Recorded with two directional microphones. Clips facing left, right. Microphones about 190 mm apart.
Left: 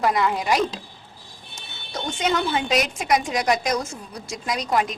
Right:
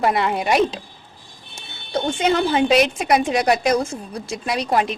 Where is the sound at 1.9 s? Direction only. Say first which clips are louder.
Right 5 dB; 30° right (ahead or behind).